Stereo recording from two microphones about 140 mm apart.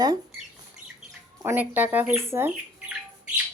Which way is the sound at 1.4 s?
15° right (ahead or behind).